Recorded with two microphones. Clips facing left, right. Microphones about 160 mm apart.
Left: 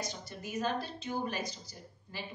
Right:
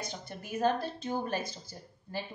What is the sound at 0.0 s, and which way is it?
A woman's voice, 55° right (ahead or behind).